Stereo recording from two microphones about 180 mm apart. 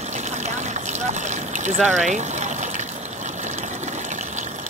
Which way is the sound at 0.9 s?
40° right (ahead or behind).